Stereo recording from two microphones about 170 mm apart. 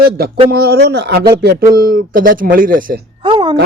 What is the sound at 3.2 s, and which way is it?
Speech, 25° right (ahead or behind).